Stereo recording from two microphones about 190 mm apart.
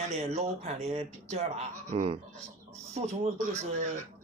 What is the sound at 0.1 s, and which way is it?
Speech, 35° right (ahead or behind).